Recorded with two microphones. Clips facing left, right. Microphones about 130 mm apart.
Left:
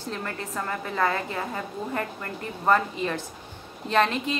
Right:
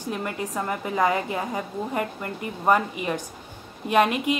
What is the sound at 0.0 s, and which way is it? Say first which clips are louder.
A woman's voice: right 4 dB; 15° right (ahead or behind).